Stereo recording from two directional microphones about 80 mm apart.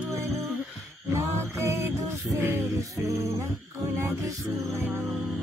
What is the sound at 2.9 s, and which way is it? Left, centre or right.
Music, right.